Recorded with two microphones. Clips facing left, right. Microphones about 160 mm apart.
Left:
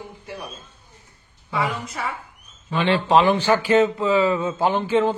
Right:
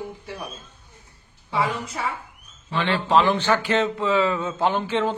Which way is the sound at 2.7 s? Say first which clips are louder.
Left 3 dB; 15° left (ahead or behind).